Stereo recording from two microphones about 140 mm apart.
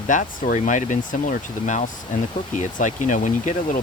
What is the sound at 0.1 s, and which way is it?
Speech, 65° left (ahead or behind).